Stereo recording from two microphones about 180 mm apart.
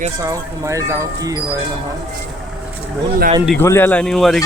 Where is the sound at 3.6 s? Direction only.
10° left (ahead or behind).